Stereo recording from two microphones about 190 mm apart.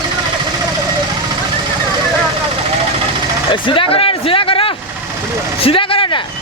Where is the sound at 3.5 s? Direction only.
25° left (ahead or behind).